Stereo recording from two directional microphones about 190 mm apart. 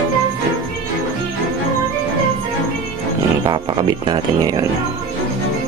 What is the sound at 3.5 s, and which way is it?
Speech, 25° right (ahead or behind).